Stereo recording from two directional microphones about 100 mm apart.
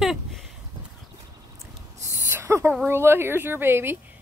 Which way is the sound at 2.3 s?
25° right (ahead or behind).